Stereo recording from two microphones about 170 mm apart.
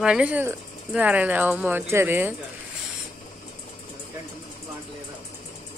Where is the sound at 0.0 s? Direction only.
5° right (ahead or behind).